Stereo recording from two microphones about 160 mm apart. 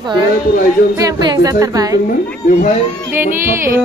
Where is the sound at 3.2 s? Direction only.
15° right (ahead or behind).